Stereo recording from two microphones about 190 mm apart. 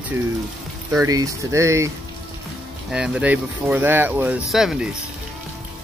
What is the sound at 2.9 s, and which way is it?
Speech, 5° right (ahead or behind).